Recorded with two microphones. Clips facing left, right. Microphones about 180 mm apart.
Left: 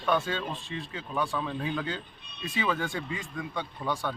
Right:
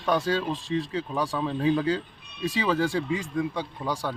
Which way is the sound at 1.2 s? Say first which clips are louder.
Right 4 dB; 35° right (ahead or behind).